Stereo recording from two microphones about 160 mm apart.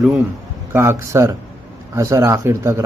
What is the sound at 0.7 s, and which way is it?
Speech, 15° right (ahead or behind).